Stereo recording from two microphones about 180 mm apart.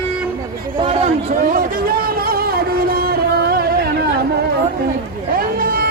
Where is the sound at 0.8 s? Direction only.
35° right (ahead or behind); by 3.9 s 60° right (ahead or behind).